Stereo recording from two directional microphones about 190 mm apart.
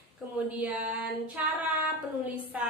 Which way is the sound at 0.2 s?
5° right (ahead or behind).